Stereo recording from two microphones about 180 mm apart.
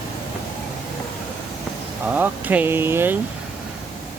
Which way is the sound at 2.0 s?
10° right (ahead or behind).